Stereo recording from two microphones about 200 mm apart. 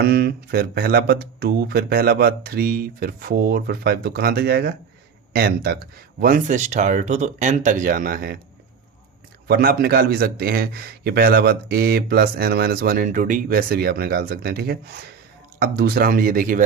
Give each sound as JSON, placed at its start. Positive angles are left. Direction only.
{"t": 0.0, "sound": "a man's voice", "side_deg": -55}
{"t": 9.5, "sound": "a man's voice", "side_deg": -50}